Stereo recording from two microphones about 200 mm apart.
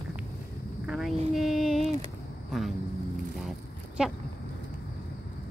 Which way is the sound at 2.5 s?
Centre (ahead or behind).